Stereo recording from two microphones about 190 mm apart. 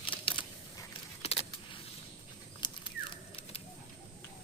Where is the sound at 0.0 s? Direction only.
25° left (ahead or behind).